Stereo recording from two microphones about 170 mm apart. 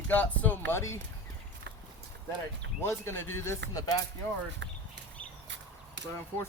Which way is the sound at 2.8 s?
15° left (ahead or behind).